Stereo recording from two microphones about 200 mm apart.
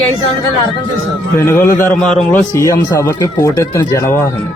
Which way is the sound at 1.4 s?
15° left (ahead or behind).